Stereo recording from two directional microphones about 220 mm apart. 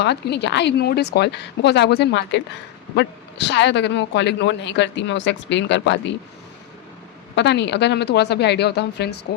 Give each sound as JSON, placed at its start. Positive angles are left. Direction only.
{"t": 0.0, "sound": "a man's voice", "side_deg": 50}
{"t": 7.3, "sound": "a man's voice", "side_deg": 50}